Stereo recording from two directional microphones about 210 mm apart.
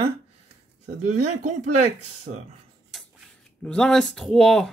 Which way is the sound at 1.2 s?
35° right (ahead or behind).